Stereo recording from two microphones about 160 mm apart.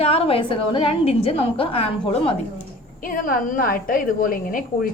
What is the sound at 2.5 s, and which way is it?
A woman's voice, 60° left (ahead or behind).